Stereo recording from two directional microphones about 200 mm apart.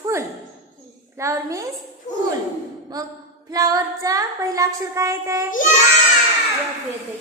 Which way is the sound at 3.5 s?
15° right (ahead or behind).